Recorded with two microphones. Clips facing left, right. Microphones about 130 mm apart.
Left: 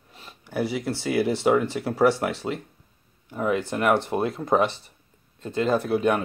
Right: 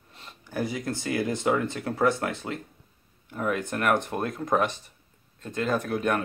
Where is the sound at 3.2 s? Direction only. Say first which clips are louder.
Left 4 dB; 10° left (ahead or behind).